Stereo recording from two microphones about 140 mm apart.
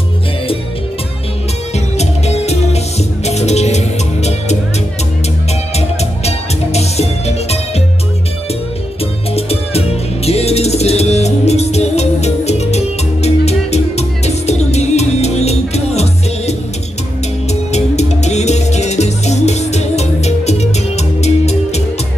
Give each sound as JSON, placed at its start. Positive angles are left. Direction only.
{"t": 2.0, "sound": "music", "side_deg": 50}
{"t": 5.8, "sound": "music", "side_deg": 50}
{"t": 9.3, "sound": "music", "side_deg": 45}